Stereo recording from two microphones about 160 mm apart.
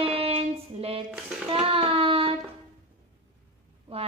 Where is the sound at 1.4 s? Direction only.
35° right (ahead or behind).